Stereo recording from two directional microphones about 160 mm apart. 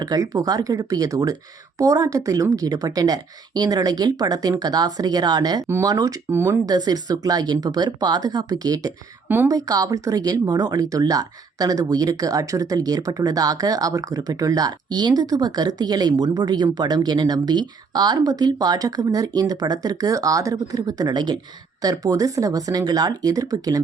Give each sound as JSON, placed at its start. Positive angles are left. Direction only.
{"t": 0.0, "sound": "speech", "side_deg": -25}